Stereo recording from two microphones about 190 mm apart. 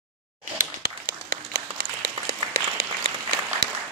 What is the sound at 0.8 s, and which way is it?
Applause, 50° right (ahead or behind).